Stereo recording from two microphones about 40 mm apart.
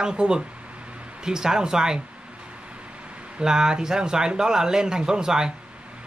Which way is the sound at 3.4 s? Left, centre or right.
Centre.